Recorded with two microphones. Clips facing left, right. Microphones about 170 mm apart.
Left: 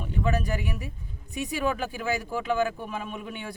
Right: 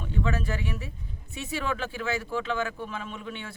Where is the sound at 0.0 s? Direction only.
15° left (ahead or behind).